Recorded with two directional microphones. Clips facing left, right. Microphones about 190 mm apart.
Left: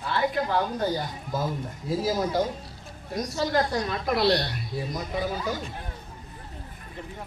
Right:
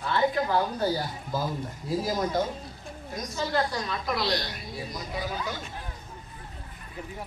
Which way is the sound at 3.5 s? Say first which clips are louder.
Left 2 dB; 50° left (ahead or behind).